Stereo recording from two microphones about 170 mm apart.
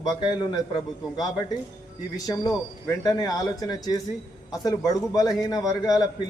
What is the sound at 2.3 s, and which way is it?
A man's voice, 20° left (ahead or behind).